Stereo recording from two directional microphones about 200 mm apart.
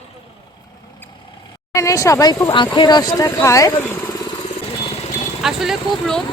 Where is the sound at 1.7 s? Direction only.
15° left (ahead or behind).